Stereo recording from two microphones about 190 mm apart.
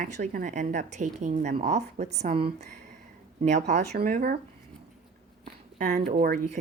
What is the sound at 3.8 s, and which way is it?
Speech, 55° right (ahead or behind).